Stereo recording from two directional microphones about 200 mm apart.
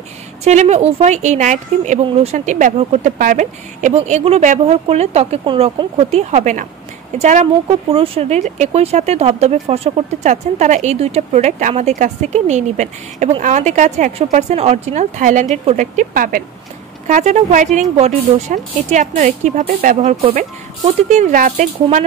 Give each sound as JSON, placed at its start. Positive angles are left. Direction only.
{"t": 0.4, "sound": "speech", "side_deg": -35}